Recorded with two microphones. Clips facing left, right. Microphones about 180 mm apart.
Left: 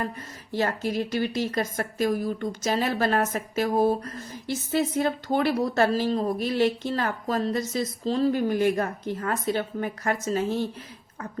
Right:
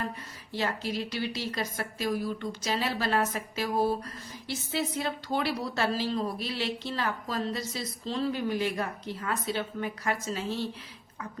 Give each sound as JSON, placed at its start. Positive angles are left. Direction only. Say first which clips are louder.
{"t": 0.5, "sound": "speech", "louder": "left 5 dB", "side_deg": 50}